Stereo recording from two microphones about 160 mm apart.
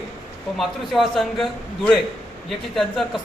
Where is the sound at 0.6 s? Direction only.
Centre (ahead or behind).